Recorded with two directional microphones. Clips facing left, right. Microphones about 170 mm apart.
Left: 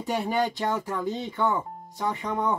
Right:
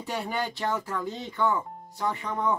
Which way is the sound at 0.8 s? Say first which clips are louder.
Left 3 dB; 20° left (ahead or behind).